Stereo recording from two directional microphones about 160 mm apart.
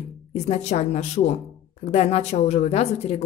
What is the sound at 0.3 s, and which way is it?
A woman's voice, 45° left (ahead or behind).